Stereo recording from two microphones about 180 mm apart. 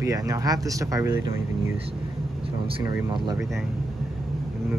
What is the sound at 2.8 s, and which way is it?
Speech, 25° right (ahead or behind).